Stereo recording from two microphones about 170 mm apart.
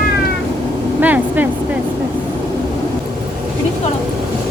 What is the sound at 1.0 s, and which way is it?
Speech, 10° right (ahead or behind).